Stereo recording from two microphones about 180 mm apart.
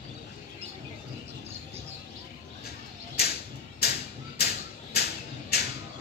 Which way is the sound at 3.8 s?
65° left (ahead or behind).